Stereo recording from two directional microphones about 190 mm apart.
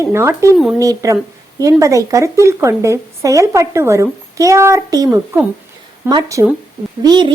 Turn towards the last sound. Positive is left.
turn(degrees=-25)  # may be behind; listen again after turning